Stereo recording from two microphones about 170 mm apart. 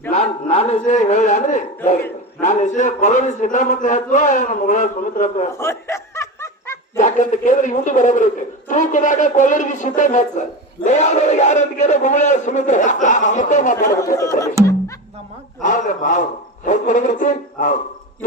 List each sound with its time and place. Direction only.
0.1 s a sound: 40° left (ahead or behind)
2.4 s a man's voice: 45° left (ahead or behind)
5.5 s snicker: 15° left (ahead or behind)
7.0 s a man's voice: 50° left (ahead or behind)
13.8 s speech: 20° left (ahead or behind)
15.6 s a man's voice: 45° left (ahead or behind)